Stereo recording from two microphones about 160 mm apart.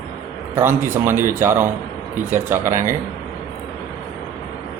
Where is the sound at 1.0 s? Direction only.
15° right (ahead or behind).